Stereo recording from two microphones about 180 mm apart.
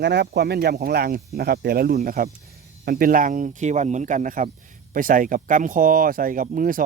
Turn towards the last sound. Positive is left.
turn(degrees=-50)  # may be behind; listen again after turning